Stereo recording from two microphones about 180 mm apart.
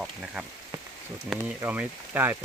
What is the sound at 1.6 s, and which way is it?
Speech, 10° right (ahead or behind).